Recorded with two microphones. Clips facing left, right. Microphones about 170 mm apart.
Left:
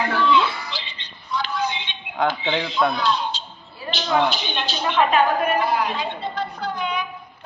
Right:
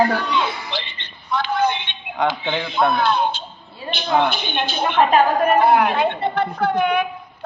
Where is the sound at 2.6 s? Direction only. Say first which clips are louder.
Right 5 dB; 55° right (ahead or behind).